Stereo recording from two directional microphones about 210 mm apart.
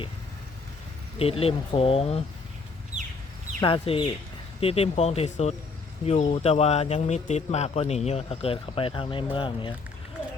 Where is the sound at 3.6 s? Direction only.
25° left (ahead or behind).